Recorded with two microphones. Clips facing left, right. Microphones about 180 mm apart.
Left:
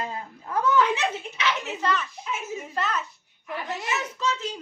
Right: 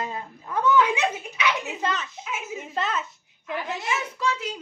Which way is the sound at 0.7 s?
15° right (ahead or behind).